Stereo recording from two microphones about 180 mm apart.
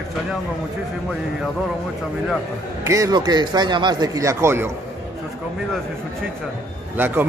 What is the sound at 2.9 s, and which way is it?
Speech, 20° right (ahead or behind).